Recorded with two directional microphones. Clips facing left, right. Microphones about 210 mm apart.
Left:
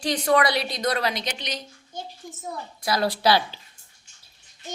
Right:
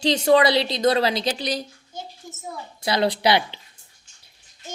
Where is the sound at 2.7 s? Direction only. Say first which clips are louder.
Right 3 dB; 25° right (ahead or behind).